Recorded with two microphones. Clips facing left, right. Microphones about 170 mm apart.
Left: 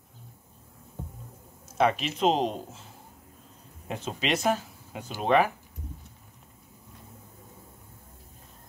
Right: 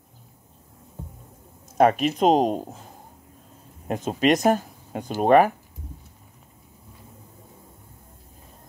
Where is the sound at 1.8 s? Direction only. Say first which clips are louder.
Right 6 dB; 45° right (ahead or behind).